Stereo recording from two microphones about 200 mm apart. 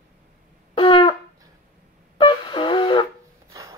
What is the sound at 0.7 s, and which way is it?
Wind instrument, 25° left (ahead or behind).